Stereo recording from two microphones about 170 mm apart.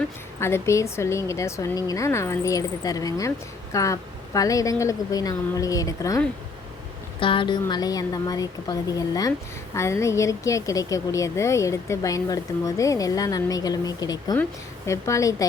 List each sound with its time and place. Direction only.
0.3 s a woman's voice: 15° left (ahead or behind)
7.2 s speech: 30° left (ahead or behind)